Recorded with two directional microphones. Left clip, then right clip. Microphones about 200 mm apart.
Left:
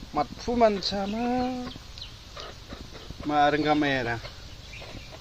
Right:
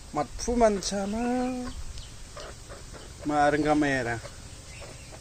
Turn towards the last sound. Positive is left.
turn(degrees=-10)  # may be behind; listen again after turning